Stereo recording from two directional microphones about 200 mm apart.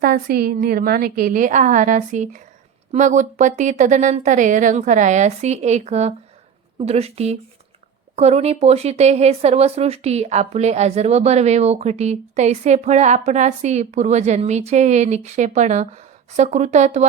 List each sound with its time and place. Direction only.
0.0 s a woman's voice: 50° right (ahead or behind)